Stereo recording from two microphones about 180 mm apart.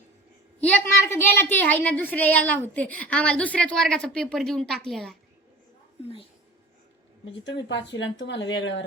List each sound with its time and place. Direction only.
0.6 s a woman's voice: 10° left (ahead or behind)
7.7 s speech: 85° left